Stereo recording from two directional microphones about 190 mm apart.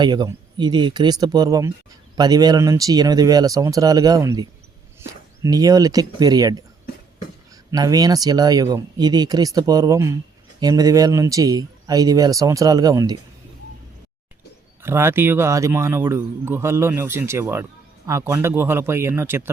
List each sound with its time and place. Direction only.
0.0 s speech: 20° right (ahead or behind)
7.7 s speech: 20° right (ahead or behind)
14.8 s speech: 15° right (ahead or behind)